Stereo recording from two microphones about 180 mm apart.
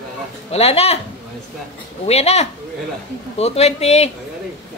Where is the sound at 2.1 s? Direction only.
35° left (ahead or behind).